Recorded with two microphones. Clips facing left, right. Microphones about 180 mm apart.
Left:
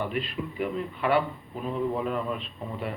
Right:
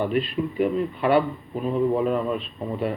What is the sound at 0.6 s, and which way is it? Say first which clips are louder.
A man's voice: right 6 dB; 30° right (ahead or behind).